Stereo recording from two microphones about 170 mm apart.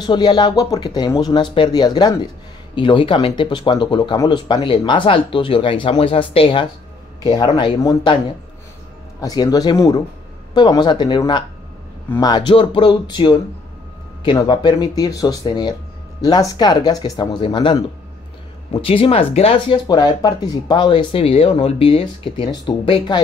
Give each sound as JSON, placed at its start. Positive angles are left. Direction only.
{"t": 0.0, "sound": "speech", "side_deg": 25}
{"t": 9.2, "sound": "speech", "side_deg": 25}